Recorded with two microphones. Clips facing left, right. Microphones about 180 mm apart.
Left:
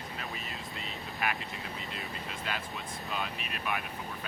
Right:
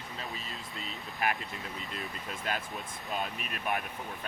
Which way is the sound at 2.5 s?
45° right (ahead or behind).